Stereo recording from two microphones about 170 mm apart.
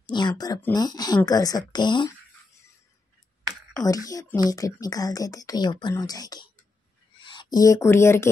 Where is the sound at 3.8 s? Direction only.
20° left (ahead or behind).